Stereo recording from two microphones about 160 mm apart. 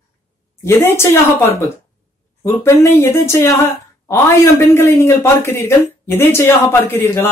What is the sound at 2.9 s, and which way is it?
A man's voice, 15° left (ahead or behind).